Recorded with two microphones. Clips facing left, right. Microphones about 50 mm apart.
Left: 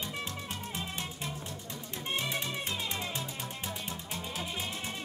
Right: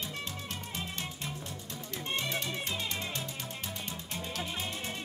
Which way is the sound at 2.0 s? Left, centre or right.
Centre.